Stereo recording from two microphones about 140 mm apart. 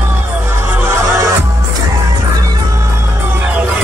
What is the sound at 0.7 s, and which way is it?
Music, 20° right (ahead or behind).